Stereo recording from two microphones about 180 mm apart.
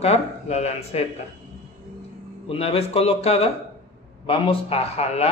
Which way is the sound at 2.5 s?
30° left (ahead or behind).